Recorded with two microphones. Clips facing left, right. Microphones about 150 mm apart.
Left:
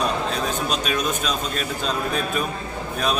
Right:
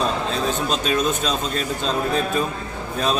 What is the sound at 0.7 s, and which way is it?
Speech, 30° right (ahead or behind).